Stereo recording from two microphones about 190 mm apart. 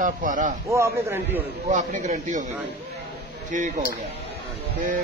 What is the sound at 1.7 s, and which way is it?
Speech, 40° right (ahead or behind).